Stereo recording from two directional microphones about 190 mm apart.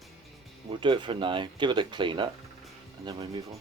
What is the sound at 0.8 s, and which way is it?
Speech, 25° right (ahead or behind).